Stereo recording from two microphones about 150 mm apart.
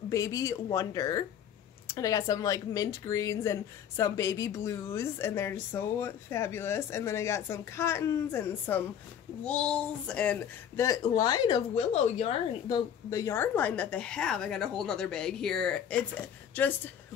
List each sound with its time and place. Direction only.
0.1 s speech: 20° left (ahead or behind)
10.9 s speech: 25° left (ahead or behind)
11.7 s speech: 45° left (ahead or behind)
12.6 s speech: 25° left (ahead or behind)